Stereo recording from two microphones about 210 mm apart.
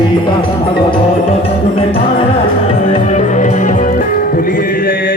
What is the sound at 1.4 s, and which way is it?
Music, 30° left (ahead or behind).